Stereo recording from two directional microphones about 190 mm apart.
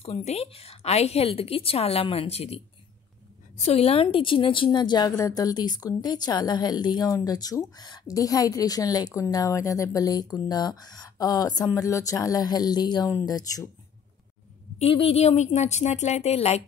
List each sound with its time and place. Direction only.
0.0 s a woman's voice: 35° left (ahead or behind)
14.8 s a woman's voice: 30° left (ahead or behind)